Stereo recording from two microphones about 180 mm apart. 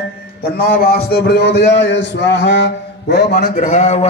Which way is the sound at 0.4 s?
60° left (ahead or behind).